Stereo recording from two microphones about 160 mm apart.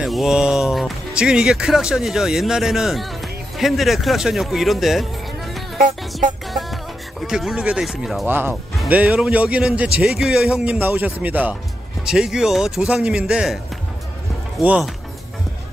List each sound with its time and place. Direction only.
0.0 s a man's voice: centre (ahead or behind)
14.6 s a man's voice: 5° right (ahead or behind)